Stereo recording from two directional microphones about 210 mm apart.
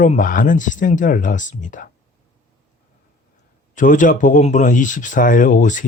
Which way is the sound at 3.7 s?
40° left (ahead or behind).